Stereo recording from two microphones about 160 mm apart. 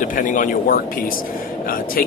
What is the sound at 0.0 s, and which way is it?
Speech, 55° left (ahead or behind).